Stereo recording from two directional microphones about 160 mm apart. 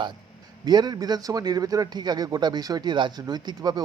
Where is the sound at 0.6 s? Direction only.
25° right (ahead or behind).